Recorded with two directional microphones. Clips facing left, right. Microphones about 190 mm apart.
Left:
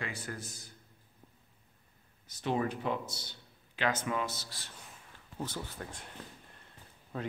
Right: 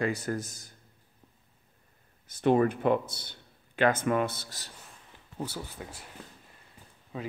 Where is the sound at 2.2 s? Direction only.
55° right (ahead or behind).